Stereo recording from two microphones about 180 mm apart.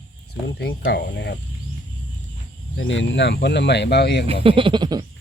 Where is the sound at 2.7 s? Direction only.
90° left; by 4.3 s 70° left (ahead or behind).